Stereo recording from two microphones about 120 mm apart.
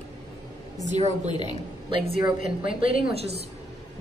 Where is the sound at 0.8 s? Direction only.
70° right (ahead or behind).